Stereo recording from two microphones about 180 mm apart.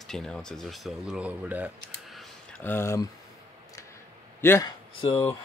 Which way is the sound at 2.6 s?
15° left (ahead or behind).